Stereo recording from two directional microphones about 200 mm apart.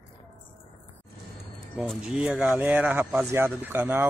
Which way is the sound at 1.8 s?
5° right (ahead or behind).